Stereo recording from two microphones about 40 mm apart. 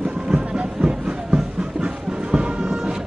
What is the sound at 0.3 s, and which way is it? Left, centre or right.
Music, right.